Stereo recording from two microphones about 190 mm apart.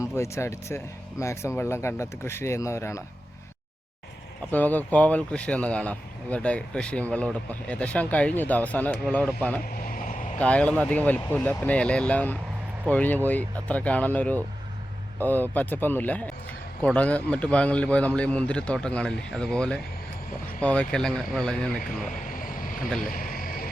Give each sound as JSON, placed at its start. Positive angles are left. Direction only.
{"t": 0.0, "sound": "a man's voice", "side_deg": 15}
{"t": 4.5, "sound": "a man's voice", "side_deg": 10}
{"t": 9.7, "sound": "vehicle", "side_deg": 50}
{"t": 10.3, "sound": "a man's voice", "side_deg": 5}
{"t": 22.0, "sound": "vehicle", "side_deg": 45}
{"t": 23.1, "sound": "a sound", "side_deg": 45}